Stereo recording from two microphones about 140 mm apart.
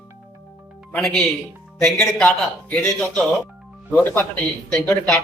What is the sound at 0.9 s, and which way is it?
A man's voice, 5° left (ahead or behind).